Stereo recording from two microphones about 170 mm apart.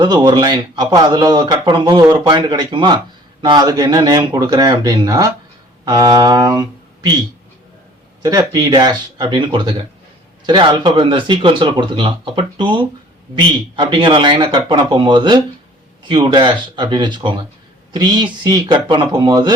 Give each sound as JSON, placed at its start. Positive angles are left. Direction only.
{"t": 0.0, "sound": "speech", "side_deg": -25}
{"t": 8.2, "sound": "speech", "side_deg": -25}